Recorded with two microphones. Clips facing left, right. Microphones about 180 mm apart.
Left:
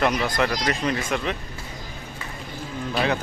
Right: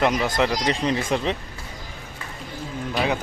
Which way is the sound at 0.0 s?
20° right (ahead or behind).